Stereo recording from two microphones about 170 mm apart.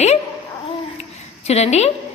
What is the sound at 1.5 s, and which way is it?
Speech, 40° left (ahead or behind).